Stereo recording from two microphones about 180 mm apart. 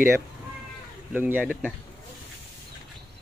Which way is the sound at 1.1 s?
10° right (ahead or behind).